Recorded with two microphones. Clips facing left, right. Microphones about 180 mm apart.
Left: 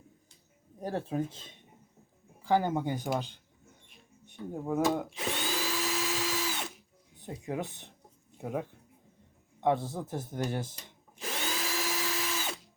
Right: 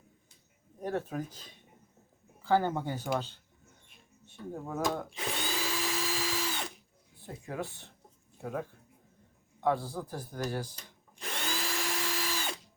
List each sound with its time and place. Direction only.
0.8 s speech: 30° left (ahead or behind)
2.4 s speech: 15° left (ahead or behind)
4.3 s speech: 15° left (ahead or behind)
5.1 s drill: centre (ahead or behind)
7.2 s speech: 20° left (ahead or behind)
11.2 s drill: centre (ahead or behind)